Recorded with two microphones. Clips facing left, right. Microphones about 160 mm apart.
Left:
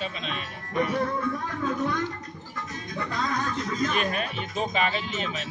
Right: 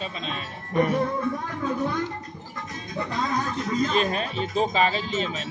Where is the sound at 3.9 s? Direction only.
30° right (ahead or behind).